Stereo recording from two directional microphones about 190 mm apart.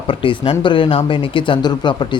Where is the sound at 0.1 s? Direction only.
25° left (ahead or behind).